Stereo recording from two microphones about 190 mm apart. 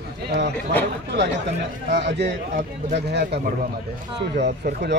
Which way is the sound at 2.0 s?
65° right (ahead or behind).